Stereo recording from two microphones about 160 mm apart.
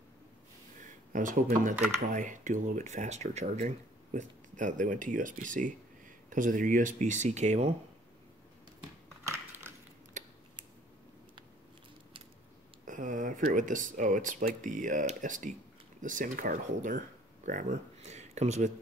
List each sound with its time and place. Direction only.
0.7 s speech: 55° right (ahead or behind)
9.2 s a sound: 15° right (ahead or behind)
12.8 s speech: 55° right (ahead or behind)